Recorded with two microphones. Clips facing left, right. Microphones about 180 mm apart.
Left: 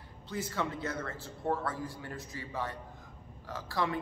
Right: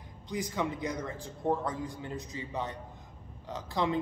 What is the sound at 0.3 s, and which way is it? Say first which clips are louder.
A man's voice: right 2 dB; 15° right (ahead or behind).